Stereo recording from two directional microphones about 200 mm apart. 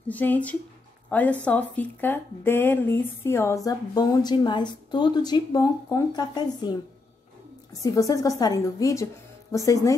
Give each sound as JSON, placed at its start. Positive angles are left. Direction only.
{"t": 0.1, "sound": "speech", "side_deg": 10}
{"t": 7.8, "sound": "speech", "side_deg": 15}